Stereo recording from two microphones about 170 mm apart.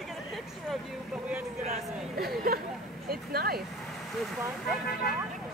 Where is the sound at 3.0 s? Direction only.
65° right (ahead or behind).